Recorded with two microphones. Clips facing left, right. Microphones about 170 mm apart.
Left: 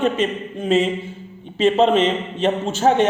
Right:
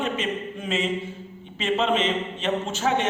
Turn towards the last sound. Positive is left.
turn(degrees=35)  # may be behind; listen again after turning